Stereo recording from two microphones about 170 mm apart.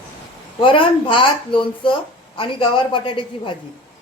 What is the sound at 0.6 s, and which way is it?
A woman's voice, 30° left (ahead or behind).